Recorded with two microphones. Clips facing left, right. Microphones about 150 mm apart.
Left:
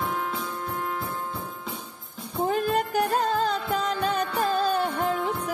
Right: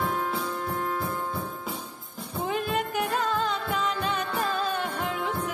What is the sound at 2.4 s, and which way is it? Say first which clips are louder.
Music: left 4 dB; 40° left (ahead or behind).